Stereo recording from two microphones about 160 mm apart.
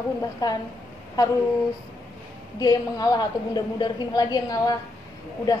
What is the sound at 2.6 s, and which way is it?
A woman's voice, 25° left (ahead or behind).